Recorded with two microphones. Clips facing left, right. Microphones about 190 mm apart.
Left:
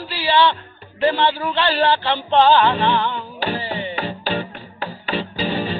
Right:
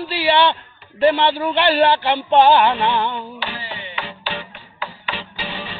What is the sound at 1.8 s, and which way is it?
Female singing, 15° right (ahead or behind).